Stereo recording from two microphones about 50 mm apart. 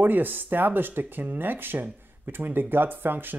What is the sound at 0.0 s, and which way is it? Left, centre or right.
Speech, right.